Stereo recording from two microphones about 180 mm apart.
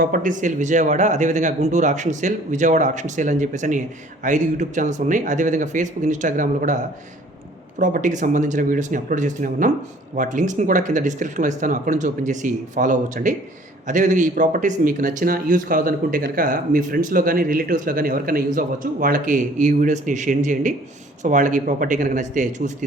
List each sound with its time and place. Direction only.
0.0 s speech: 45° right (ahead or behind)
7.8 s speech: 45° right (ahead or behind)